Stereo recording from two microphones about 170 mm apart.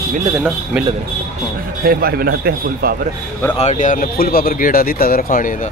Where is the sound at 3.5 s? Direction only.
45° left (ahead or behind).